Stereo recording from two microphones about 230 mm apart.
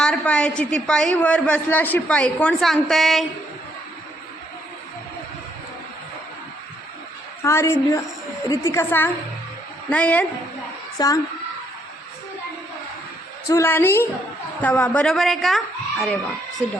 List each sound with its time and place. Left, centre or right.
0.0 s a woman's voice: centre
7.4 s a woman's voice: centre
13.5 s a woman's voice: centre